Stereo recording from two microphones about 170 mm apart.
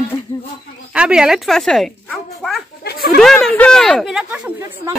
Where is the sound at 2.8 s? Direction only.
65° left (ahead or behind).